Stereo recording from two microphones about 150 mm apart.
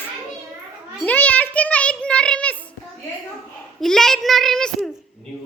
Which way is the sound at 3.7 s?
5° left (ahead or behind).